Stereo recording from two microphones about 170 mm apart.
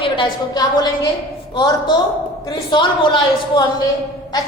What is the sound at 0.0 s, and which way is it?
A woman's voice, 25° left (ahead or behind).